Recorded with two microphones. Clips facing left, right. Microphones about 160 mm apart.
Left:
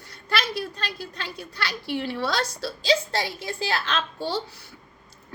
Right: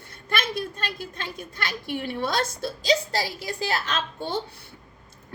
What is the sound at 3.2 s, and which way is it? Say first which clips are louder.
Speech: even; 25° left (ahead or behind).